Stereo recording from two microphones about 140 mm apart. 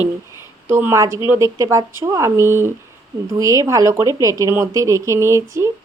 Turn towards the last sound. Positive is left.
turn(degrees=-20)  # may be behind; listen again after turning